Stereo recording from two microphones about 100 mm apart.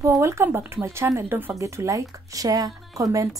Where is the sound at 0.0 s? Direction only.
30° right (ahead or behind).